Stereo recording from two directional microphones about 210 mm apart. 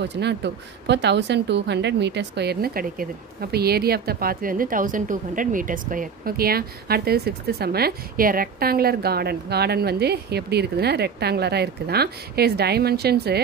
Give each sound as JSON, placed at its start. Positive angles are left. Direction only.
{"t": 0.0, "sound": "a woman's voice", "side_deg": -55}